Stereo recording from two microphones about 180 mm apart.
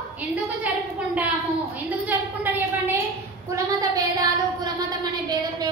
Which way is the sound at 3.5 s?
20° right (ahead or behind).